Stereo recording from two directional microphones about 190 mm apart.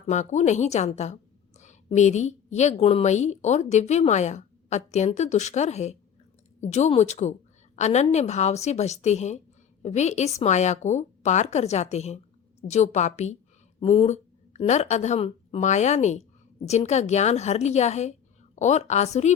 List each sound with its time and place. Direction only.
0.1 s a woman's voice: 40° left (ahead or behind)